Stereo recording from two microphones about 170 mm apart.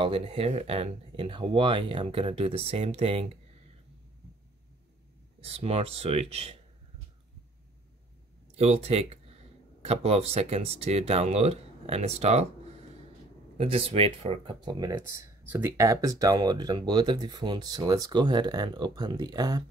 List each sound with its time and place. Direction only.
0.0 s speech: 35° right (ahead or behind)
5.4 s speech: 35° right (ahead or behind)
8.5 s speech: 40° right (ahead or behind)